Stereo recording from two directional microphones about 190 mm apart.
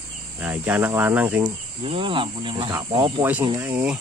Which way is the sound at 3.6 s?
5° right (ahead or behind).